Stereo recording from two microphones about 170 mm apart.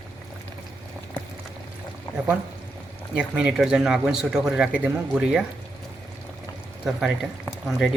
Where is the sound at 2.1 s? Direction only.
20° left (ahead or behind).